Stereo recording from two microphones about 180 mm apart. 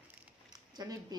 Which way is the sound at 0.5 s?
20° right (ahead or behind).